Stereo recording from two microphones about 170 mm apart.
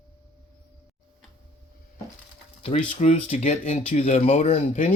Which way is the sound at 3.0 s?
45° left (ahead or behind).